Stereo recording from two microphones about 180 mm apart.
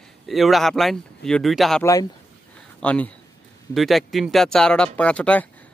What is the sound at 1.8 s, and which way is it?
Speech, 20° left (ahead or behind).